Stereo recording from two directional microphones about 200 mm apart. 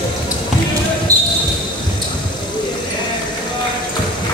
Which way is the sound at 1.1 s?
15° right (ahead or behind).